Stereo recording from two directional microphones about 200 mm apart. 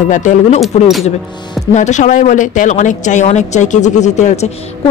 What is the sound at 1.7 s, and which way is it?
A woman's voice, 35° left (ahead or behind).